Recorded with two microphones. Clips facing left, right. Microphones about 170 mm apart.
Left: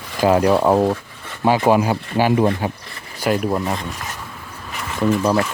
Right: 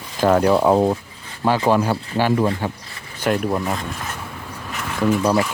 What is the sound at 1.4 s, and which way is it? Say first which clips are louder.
Speech: left 2 dB; 15° left (ahead or behind).